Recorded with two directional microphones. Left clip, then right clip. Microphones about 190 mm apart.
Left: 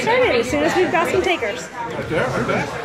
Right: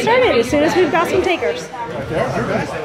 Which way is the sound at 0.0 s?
10° right (ahead or behind).